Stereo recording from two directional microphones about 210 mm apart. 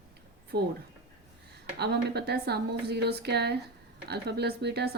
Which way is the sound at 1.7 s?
50° right (ahead or behind).